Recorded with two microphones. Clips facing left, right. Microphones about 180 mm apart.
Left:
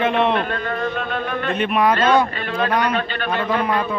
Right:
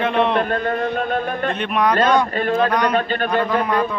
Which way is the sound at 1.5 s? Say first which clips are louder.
Left 3 dB; 5° left (ahead or behind).